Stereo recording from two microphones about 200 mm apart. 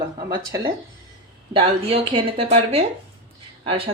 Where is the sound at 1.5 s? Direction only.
25° right (ahead or behind).